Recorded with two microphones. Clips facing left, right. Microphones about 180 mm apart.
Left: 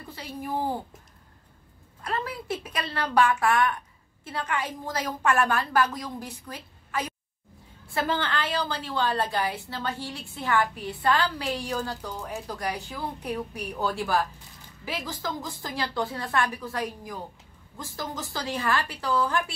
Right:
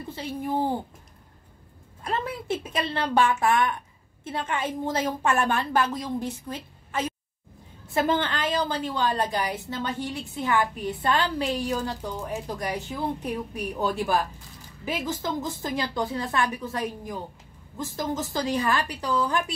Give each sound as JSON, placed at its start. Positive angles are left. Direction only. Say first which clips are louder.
{"t": 0.1, "sound": "a woman's voice", "louder": "right 3 dB", "side_deg": -25}
{"t": 2.0, "sound": "a woman's voice", "louder": "right 2 dB", "side_deg": -25}